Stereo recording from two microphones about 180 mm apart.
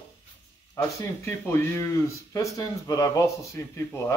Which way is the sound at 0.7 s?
15° left (ahead or behind).